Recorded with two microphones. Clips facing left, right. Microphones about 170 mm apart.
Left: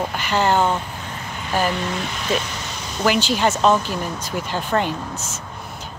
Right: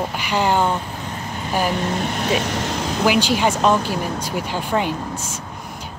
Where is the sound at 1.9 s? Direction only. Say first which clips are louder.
Right 3 dB; 55° right (ahead or behind); by 3.0 s 90° right.